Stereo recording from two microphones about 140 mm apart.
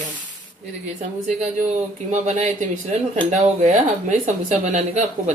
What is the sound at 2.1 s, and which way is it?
Speech, 55° right (ahead or behind).